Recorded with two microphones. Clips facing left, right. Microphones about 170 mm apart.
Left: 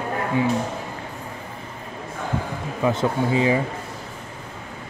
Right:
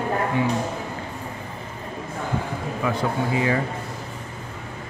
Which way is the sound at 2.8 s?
25° left (ahead or behind).